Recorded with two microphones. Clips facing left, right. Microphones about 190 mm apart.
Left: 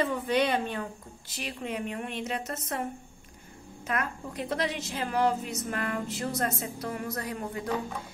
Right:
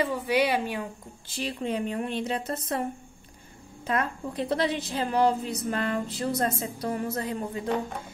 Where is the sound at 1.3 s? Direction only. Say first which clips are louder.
Right 5 dB; 30° right (ahead or behind).